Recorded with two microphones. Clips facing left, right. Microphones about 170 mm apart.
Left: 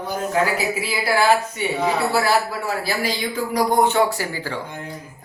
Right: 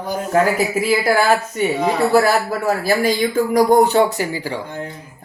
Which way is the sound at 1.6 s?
45° right (ahead or behind).